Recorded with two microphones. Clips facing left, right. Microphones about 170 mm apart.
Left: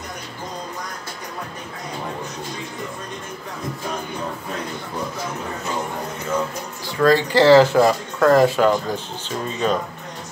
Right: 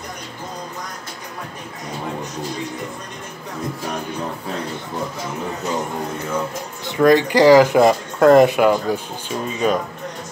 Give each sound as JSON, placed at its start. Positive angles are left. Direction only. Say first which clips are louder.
{"t": 7.0, "sound": "speech", "louder": "right 2 dB", "side_deg": -20}